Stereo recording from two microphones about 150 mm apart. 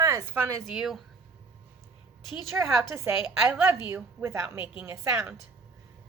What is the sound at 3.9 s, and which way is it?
Speech, 15° right (ahead or behind).